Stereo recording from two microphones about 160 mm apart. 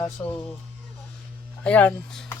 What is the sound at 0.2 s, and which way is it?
Speech, 15° left (ahead or behind).